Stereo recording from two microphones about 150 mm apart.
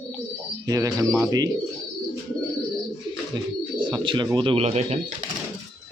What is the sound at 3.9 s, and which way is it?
A man's voice, 35° right (ahead or behind).